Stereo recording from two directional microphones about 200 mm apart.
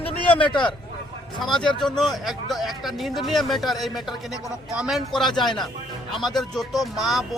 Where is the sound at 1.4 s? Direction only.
Centre (ahead or behind).